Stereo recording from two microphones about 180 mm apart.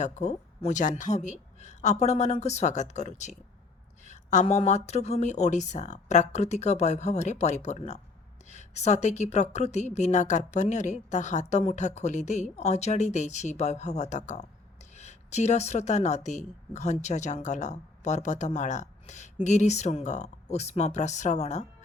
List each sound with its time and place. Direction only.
0.0 s speech: 40° left (ahead or behind)